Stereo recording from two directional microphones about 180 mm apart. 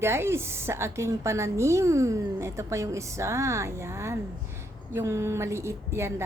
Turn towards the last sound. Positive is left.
turn(degrees=-15)  # may be behind; listen again after turning